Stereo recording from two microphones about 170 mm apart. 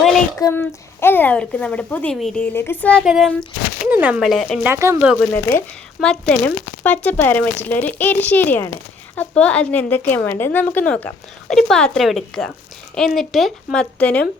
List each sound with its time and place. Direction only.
0.3 s a woman's voice: 20° left (ahead or behind)
3.0 s speech: 5° right (ahead or behind)
4.6 s speech: 15° right (ahead or behind)
5.1 s a woman's voice: 5° left (ahead or behind)